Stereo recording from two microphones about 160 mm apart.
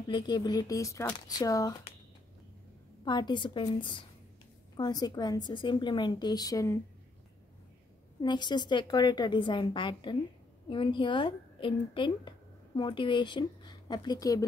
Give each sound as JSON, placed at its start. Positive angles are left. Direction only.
{"t": 0.1, "sound": "a woman's voice", "side_deg": 25}
{"t": 3.1, "sound": "a woman's voice", "side_deg": 30}
{"t": 8.2, "sound": "a woman's voice", "side_deg": 30}